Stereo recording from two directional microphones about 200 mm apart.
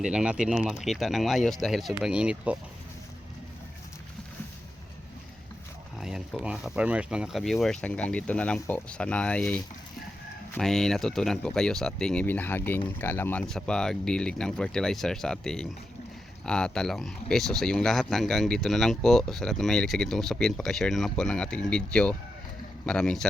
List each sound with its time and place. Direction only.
0.0 s speech: 5° right (ahead or behind)
6.0 s speech: centre (ahead or behind)